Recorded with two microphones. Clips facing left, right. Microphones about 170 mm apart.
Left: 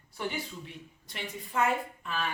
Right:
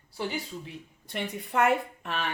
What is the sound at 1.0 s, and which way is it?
A woman's voice, 60° right (ahead or behind).